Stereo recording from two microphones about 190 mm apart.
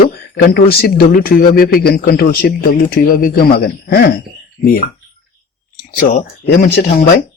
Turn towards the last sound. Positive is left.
turn(degrees=50)  # may be behind; listen again after turning